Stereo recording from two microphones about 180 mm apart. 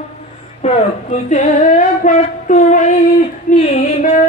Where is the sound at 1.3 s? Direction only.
40° left (ahead or behind).